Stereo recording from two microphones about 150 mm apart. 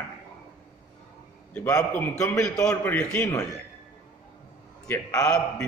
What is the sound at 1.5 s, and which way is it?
A man's voice, 10° left (ahead or behind).